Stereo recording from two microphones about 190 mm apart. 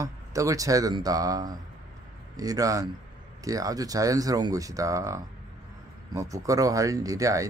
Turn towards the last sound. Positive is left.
turn(degrees=-15)  # may be behind; listen again after turning